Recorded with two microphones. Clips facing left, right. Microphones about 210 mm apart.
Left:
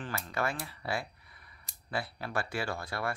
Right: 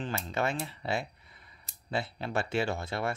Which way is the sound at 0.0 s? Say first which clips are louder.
Right 3 dB; 25° right (ahead or behind).